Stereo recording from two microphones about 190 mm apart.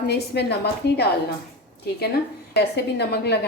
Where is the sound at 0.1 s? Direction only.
60° left (ahead or behind).